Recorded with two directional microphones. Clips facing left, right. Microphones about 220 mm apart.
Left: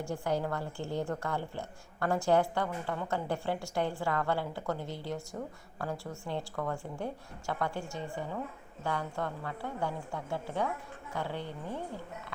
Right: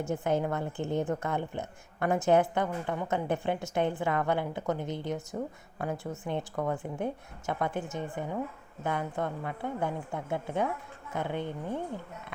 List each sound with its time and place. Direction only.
0.0 s a woman's voice: 20° right (ahead or behind)